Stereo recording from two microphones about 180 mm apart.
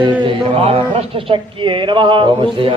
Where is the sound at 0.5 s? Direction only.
35° right (ahead or behind).